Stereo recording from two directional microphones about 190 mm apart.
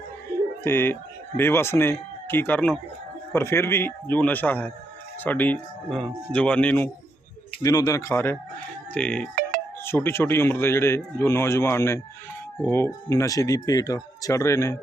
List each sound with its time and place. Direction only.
0.6 s a man's voice: 10° left (ahead or behind)